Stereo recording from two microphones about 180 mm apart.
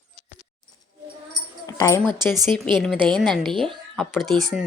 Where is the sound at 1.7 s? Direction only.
15° left (ahead or behind).